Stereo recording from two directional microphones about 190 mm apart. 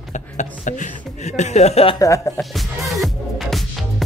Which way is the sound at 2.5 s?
Centre (ahead or behind).